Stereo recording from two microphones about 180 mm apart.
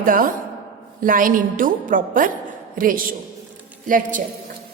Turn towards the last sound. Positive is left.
turn(degrees=-45)  # may be behind; listen again after turning